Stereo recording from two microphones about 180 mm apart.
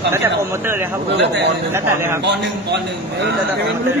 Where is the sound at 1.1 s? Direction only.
75° right (ahead or behind).